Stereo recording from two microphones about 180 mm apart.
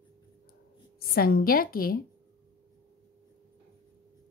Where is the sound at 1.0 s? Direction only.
55° left (ahead or behind).